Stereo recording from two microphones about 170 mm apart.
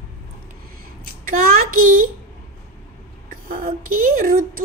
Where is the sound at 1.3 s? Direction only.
55° right (ahead or behind).